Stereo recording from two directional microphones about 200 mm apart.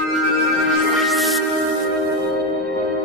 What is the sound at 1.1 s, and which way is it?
Music, centre (ahead or behind).